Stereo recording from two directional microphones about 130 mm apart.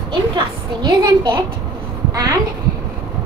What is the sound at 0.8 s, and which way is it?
Speech, 35° right (ahead or behind).